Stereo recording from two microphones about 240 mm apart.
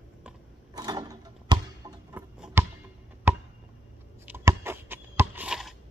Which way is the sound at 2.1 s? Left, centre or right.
Centre.